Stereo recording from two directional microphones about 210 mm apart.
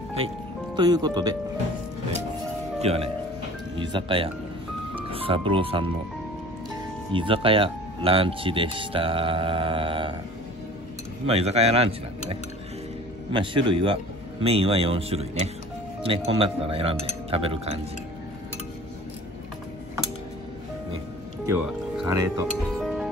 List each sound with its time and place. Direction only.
0.7 s speech: 20° right (ahead or behind)
2.8 s speech: 30° right (ahead or behind)
11.2 s speech: 30° right (ahead or behind)
21.5 s speech: 10° right (ahead or behind)
22.8 s music: centre (ahead or behind)